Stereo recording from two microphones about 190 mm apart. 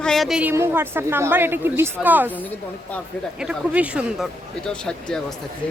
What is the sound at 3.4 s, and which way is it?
Speech, 5° right (ahead or behind).